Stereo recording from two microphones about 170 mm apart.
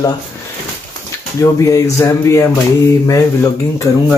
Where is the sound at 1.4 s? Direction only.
20° left (ahead or behind).